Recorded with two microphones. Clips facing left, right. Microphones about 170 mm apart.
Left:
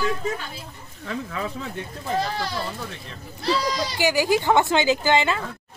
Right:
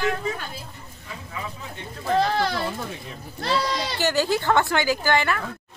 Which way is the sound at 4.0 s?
10° left (ahead or behind).